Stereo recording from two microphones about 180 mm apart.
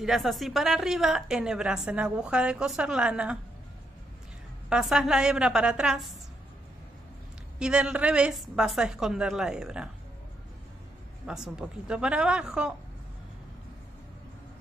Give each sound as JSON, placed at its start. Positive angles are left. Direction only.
{"t": 0.0, "sound": "a woman's voice", "side_deg": 0}
{"t": 4.6, "sound": "a woman's voice", "side_deg": -5}
{"t": 7.5, "sound": "a woman's voice", "side_deg": -5}
{"t": 11.2, "sound": "a woman's voice", "side_deg": -5}